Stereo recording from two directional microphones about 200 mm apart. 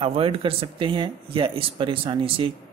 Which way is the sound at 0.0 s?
30° right (ahead or behind).